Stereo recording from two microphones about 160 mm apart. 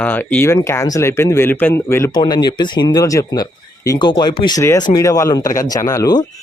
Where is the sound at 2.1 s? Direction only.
25° left (ahead or behind).